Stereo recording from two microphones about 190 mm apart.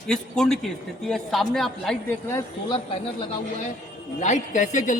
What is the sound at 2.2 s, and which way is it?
Speech, 15° left (ahead or behind).